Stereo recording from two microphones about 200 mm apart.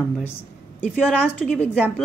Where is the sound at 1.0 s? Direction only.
Centre (ahead or behind).